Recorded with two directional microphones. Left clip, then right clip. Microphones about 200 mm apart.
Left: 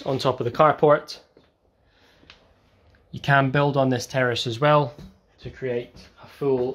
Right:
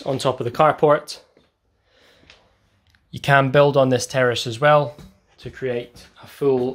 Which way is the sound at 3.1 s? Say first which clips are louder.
Right 4 dB; 25° right (ahead or behind).